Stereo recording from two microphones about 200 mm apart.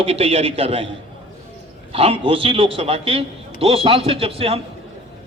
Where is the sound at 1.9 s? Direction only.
30° right (ahead or behind).